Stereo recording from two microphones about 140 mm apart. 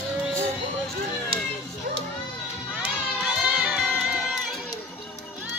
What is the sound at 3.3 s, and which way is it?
Crowd, 5° right (ahead or behind).